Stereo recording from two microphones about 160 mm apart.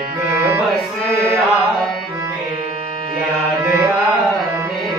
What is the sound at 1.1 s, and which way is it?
Chant, 20° right (ahead or behind).